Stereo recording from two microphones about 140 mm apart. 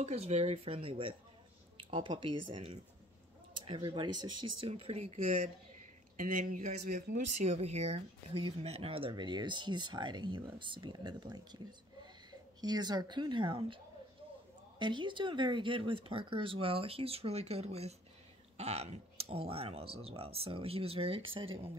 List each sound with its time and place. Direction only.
0.0 s speech: 50° right (ahead or behind)
6.1 s speech: 75° right (ahead or behind); by 13.7 s 35° right (ahead or behind)
14.8 s speech: 35° right (ahead or behind)